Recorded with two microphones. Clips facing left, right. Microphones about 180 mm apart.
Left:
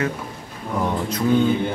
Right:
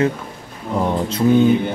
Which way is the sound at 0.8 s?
25° right (ahead or behind).